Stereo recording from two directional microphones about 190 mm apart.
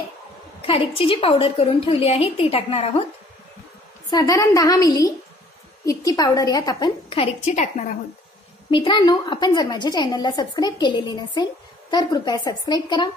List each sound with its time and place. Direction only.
0.7 s a woman's voice: 30° left (ahead or behind)
4.1 s a woman's voice: 20° left (ahead or behind); by 8.0 s 40° left (ahead or behind)
8.6 s a woman's voice: 25° left (ahead or behind)